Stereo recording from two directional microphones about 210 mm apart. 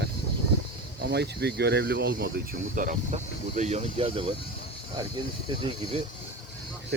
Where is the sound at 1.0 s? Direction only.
50° right (ahead or behind); by 4.4 s 25° right (ahead or behind).